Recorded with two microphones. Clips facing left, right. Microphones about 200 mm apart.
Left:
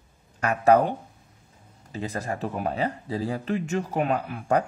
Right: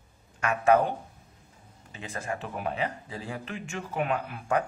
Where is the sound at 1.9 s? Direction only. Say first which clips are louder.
Left 5 dB; 35° left (ahead or behind).